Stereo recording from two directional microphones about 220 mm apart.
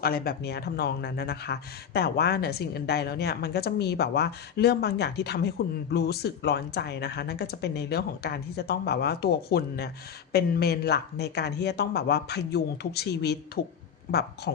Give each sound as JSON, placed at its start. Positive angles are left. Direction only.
{"t": 0.0, "sound": "speech", "side_deg": 45}